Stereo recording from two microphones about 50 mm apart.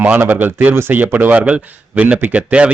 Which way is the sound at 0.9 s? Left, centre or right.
Right.